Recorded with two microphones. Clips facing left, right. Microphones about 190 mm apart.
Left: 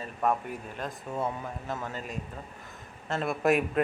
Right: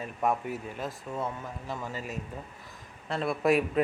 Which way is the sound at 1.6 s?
5° right (ahead or behind).